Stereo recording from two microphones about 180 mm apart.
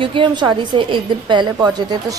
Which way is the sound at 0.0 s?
30° right (ahead or behind).